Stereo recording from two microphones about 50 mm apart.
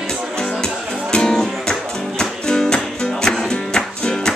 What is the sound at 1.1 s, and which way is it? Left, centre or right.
Music, centre.